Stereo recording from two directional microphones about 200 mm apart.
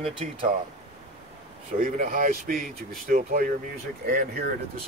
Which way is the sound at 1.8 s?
40° right (ahead or behind).